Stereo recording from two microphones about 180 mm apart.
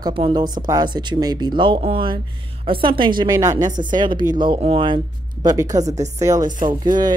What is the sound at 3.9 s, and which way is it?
A woman's voice, 25° right (ahead or behind).